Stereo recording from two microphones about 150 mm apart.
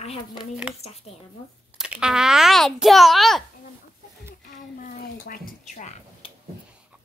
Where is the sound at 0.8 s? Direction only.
45° left (ahead or behind).